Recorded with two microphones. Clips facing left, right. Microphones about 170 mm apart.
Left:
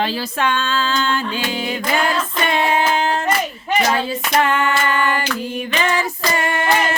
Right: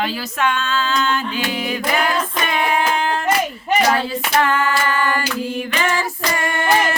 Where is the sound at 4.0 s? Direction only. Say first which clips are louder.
Even; 25° left (ahead or behind).